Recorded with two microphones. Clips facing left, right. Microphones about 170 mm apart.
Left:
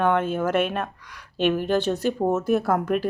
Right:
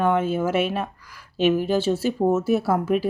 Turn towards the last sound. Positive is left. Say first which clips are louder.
# right 1 dB
turn(degrees=-5)  # may be behind; listen again after turning